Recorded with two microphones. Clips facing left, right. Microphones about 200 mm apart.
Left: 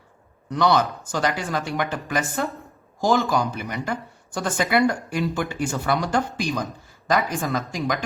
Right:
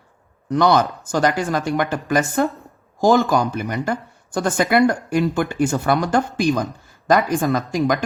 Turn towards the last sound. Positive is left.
turn(degrees=-50)  # may be behind; listen again after turning